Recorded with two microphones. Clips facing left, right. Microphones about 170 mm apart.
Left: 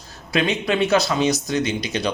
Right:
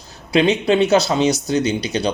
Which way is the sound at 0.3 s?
30° right (ahead or behind).